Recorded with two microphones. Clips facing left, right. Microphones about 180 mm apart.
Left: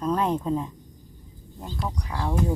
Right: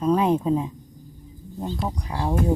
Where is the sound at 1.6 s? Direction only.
25° right (ahead or behind).